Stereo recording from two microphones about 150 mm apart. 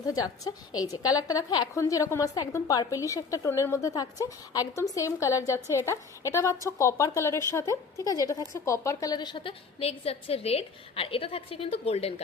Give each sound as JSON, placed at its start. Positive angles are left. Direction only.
{"t": 0.1, "sound": "a woman's voice", "side_deg": 25}